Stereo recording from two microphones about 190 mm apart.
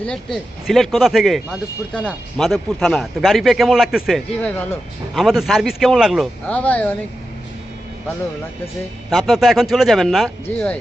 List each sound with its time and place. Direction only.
0.0 s speech: 5° left (ahead or behind)
4.4 s speech: 10° left (ahead or behind)
9.0 s speech: centre (ahead or behind)